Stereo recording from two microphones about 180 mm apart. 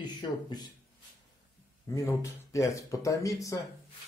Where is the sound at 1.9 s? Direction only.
15° left (ahead or behind).